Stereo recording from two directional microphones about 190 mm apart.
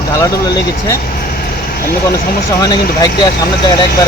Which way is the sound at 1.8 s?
55° left (ahead or behind).